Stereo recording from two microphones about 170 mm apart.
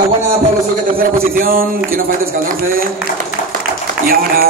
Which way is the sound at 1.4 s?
55° right (ahead or behind).